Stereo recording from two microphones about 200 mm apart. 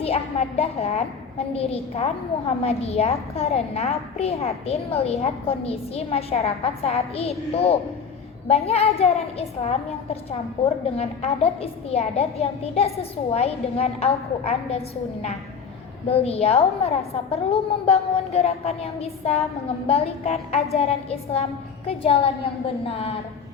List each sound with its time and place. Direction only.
0.0 s a woman's voice: 30° left (ahead or behind)
16.0 s a woman's voice: 30° left (ahead or behind)